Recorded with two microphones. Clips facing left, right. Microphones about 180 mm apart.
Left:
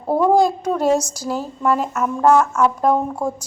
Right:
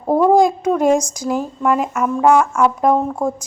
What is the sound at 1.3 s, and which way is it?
A woman's voice, 10° right (ahead or behind).